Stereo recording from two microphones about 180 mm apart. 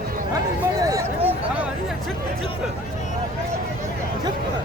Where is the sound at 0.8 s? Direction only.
20° right (ahead or behind).